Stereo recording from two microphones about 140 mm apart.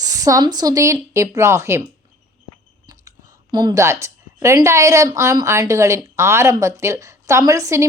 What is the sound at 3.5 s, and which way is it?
A woman's voice, 30° right (ahead or behind).